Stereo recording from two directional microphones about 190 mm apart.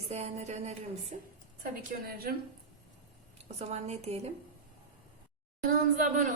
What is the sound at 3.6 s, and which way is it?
Speech, 35° right (ahead or behind).